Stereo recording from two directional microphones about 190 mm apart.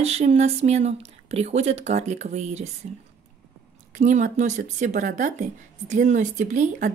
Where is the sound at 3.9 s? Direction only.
40° right (ahead or behind).